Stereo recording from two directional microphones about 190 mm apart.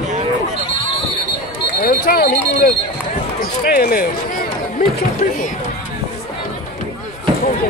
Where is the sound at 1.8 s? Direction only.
55° left (ahead or behind).